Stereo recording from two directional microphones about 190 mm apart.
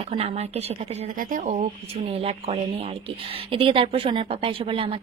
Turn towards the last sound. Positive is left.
turn(degrees=-30)  # may be behind; listen again after turning